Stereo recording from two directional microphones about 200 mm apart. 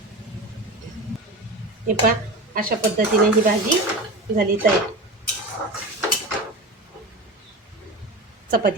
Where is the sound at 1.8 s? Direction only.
45° right (ahead or behind).